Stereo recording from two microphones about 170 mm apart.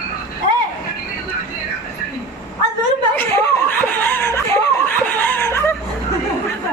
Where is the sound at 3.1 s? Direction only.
15° left (ahead or behind).